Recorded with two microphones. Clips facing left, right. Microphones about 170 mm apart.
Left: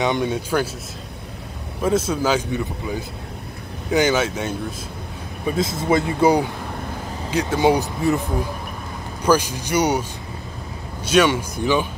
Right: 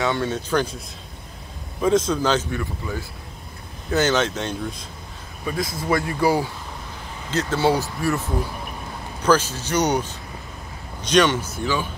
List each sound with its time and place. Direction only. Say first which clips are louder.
0.0 s speech: left 2 dB; 15° left (ahead or behind)
1.8 s speech: right 1 dB; 5° left (ahead or behind)
2.5 s speech: left 3 dB; 20° left (ahead or behind)
5.6 s speech: left 3 dB; 25° left (ahead or behind)
11.1 s speech: left 1 dB; 10° left (ahead or behind)